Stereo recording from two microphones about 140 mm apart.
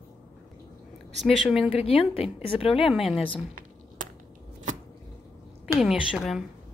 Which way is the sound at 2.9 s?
5° right (ahead or behind).